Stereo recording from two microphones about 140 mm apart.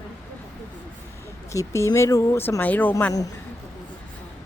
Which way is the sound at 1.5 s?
20° left (ahead or behind).